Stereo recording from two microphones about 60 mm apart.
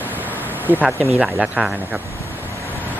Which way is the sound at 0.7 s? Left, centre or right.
Right.